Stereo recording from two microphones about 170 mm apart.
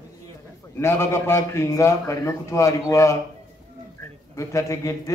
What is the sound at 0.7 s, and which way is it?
A man's voice, 15° left (ahead or behind).